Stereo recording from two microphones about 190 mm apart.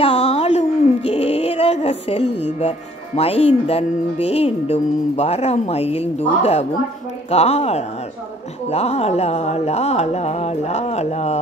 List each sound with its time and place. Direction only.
0.0 s music: 30° left (ahead or behind)
3.2 s speech: 30° left (ahead or behind)